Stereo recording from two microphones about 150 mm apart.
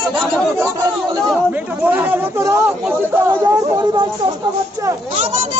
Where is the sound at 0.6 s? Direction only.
25° right (ahead or behind).